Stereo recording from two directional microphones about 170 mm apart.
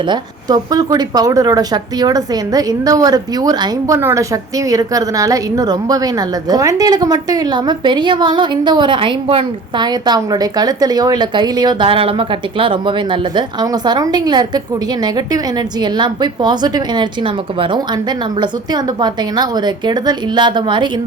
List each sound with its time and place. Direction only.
0.1 s speech: 25° right (ahead or behind)
15.8 s speech: 25° right (ahead or behind)